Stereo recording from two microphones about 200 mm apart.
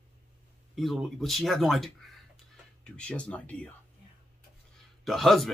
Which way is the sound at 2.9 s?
5° left (ahead or behind).